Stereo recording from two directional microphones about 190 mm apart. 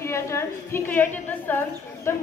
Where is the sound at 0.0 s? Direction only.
15° left (ahead or behind).